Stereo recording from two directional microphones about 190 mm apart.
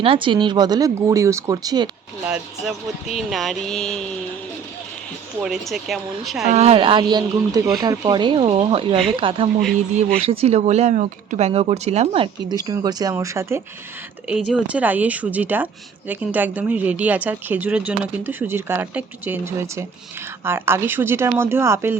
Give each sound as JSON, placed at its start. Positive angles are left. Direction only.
{"t": 0.0, "sound": "speech", "side_deg": -25}
{"t": 2.2, "sound": "speech", "side_deg": -5}
{"t": 5.4, "sound": "speech", "side_deg": 0}
{"t": 6.5, "sound": "speech", "side_deg": -30}
{"t": 9.6, "sound": "speech", "side_deg": 0}
{"t": 10.2, "sound": "speech", "side_deg": -30}
{"t": 14.7, "sound": "speech", "side_deg": -10}